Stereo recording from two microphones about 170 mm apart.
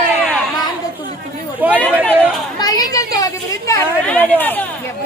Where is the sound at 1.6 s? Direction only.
10° right (ahead or behind).